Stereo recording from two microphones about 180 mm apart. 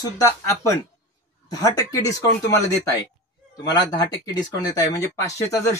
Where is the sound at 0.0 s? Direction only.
15° left (ahead or behind).